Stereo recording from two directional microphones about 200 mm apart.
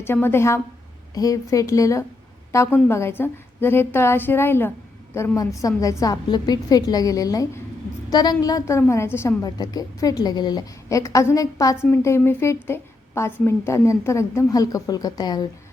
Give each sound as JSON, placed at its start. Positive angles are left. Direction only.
{"t": 0.0, "sound": "a woman's voice", "side_deg": 10}